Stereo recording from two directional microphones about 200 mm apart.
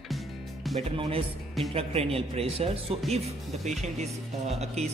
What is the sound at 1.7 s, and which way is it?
A man's voice, 30° right (ahead or behind).